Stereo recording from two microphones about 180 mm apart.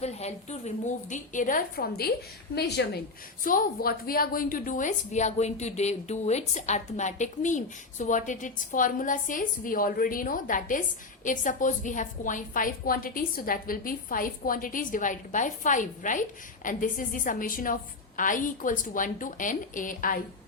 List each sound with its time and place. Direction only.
0.0 s a woman's voice: 35° left (ahead or behind); by 3.0 s 65° left (ahead or behind)
3.4 s a woman's voice: 55° left (ahead or behind)